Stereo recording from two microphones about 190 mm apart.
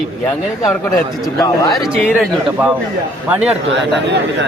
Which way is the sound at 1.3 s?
15° left (ahead or behind).